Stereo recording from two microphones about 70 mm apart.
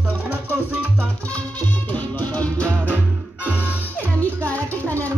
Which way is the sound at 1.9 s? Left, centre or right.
Left.